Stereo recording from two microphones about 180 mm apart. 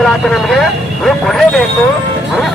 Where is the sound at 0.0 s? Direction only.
Centre (ahead or behind).